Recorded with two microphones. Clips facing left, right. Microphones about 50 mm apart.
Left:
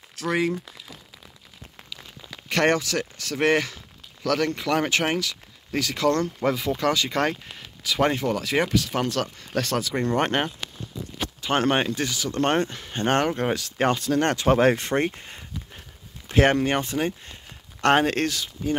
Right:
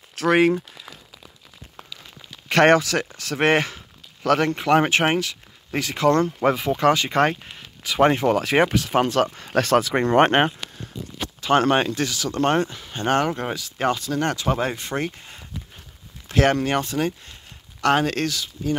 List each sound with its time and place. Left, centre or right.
0.1 s speech: right
2.5 s speech: right; by 8.2 s centre
8.2 s speech: right
9.3 s speech: right
11.4 s speech: centre
12.6 s speech: left
13.4 s speech: centre
13.7 s speech: left
14.9 s speech: left
16.3 s speech: left
17.7 s speech: left